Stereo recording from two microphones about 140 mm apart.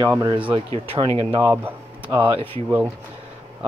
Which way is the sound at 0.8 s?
40° right (ahead or behind).